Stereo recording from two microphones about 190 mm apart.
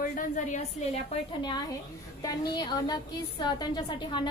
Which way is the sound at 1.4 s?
20° left (ahead or behind).